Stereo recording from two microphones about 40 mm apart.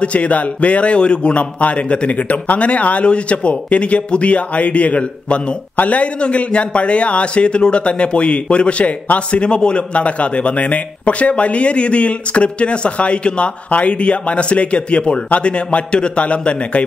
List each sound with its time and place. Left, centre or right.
0.0 s a man's voice: left